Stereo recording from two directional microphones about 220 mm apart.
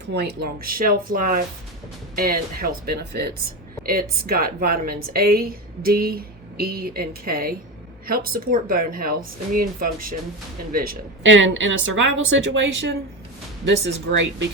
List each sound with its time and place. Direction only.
0.1 s speech: 50° right (ahead or behind)
11.2 s a woman's voice: 60° right (ahead or behind)